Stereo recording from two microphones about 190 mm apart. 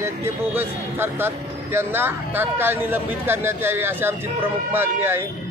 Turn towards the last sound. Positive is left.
turn(degrees=-10)  # may be behind; listen again after turning